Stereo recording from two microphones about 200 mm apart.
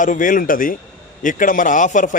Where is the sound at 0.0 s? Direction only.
40° left (ahead or behind).